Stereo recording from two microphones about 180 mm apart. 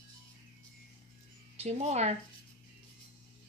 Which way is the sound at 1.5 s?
35° right (ahead or behind).